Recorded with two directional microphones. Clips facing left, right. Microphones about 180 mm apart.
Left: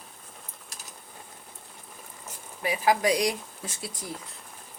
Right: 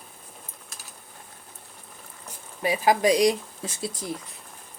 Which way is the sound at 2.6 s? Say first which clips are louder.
Right 3 dB; 25° right (ahead or behind).